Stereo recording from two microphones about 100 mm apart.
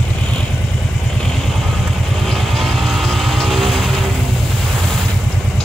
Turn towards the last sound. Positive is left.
turn(degrees=0)  # may be behind; listen again after turning